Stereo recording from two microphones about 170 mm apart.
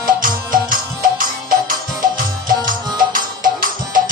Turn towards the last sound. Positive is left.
turn(degrees=-55)  # may be behind; listen again after turning